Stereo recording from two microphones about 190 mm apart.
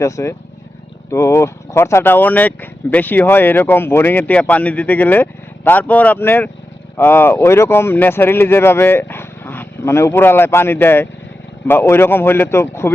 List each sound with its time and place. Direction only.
0.0 s speech: 15° left (ahead or behind)